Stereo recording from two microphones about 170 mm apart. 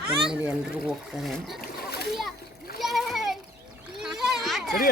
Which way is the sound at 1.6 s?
70° left (ahead or behind).